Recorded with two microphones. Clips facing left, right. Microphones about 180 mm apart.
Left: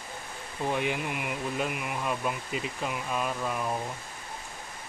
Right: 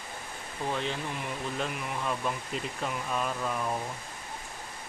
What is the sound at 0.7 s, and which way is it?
Speech, 15° left (ahead or behind).